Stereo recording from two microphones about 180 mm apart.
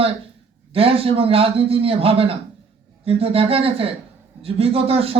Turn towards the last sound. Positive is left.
turn(degrees=-30)  # may be behind; listen again after turning